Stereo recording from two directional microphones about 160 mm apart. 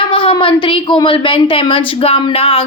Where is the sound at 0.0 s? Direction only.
35° left (ahead or behind).